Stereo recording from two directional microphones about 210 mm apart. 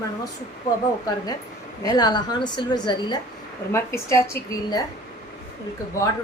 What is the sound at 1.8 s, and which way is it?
A woman's voice, 20° left (ahead or behind).